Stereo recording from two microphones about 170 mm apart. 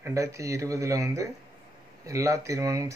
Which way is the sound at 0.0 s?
20° right (ahead or behind).